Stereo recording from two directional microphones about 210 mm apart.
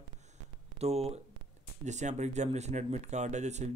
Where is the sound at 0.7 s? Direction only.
30° right (ahead or behind).